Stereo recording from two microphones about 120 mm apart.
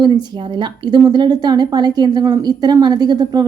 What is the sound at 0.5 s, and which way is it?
A woman's voice, 40° right (ahead or behind).